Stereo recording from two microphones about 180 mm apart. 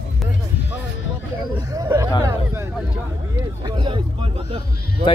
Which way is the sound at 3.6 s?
25° right (ahead or behind).